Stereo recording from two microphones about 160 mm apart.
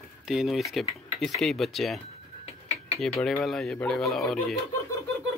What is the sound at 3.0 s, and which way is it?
Speech, 5° left (ahead or behind).